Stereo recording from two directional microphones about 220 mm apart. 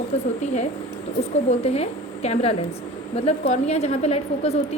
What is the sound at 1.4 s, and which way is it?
A woman's voice, 30° left (ahead or behind).